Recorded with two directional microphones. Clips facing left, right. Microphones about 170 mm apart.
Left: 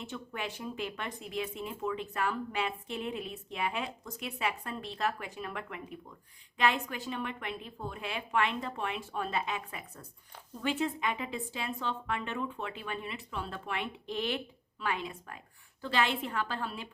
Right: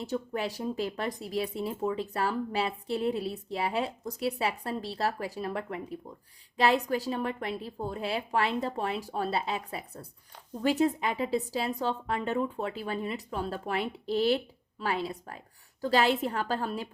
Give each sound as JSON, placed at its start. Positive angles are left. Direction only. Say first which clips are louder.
{"t": 0.0, "sound": "speech", "louder": "right 7 dB", "side_deg": -35}